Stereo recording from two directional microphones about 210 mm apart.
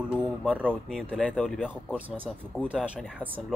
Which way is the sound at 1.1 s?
5° left (ahead or behind).